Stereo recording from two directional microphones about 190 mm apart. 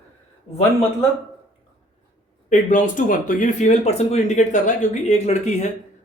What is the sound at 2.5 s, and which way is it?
Speech, 40° left (ahead or behind).